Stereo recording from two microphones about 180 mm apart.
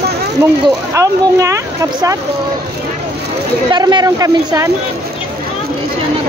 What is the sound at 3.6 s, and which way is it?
Speech, 25° right (ahead or behind).